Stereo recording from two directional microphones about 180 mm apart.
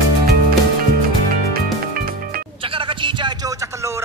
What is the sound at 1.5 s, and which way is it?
Music, 55° right (ahead or behind).